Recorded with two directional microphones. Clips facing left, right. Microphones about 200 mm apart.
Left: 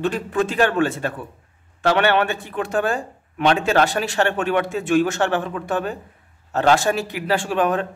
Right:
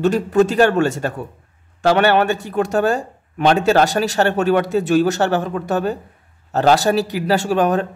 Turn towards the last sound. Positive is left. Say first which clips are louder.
# right 4 dB
turn(degrees=-40)  # may be behind; listen again after turning